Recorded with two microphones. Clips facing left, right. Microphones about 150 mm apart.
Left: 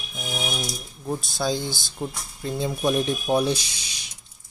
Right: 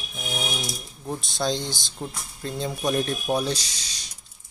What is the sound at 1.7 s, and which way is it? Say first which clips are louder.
Speech: left 2 dB; 20° right (ahead or behind).